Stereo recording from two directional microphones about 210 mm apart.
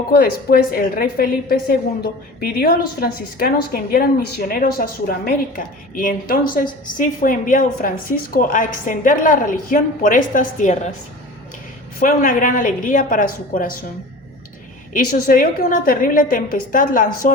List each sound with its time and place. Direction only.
0.2 s a woman's voice: 45° left (ahead or behind)
11.9 s speech: 40° left (ahead or behind)
14.9 s speech: 40° left (ahead or behind)